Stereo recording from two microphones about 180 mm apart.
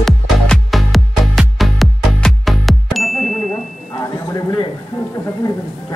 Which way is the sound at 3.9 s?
20° left (ahead or behind).